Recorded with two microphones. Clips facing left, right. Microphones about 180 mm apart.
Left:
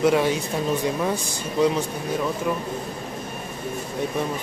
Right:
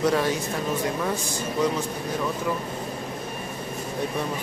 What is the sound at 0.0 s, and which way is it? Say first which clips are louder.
Speech: left 3 dB; 15° left (ahead or behind).